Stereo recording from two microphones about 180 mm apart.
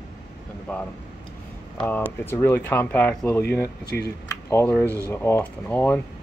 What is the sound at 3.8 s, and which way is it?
Speech, 60° left (ahead or behind).